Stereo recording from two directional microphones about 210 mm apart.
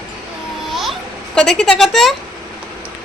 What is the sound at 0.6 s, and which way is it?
Music, centre (ahead or behind).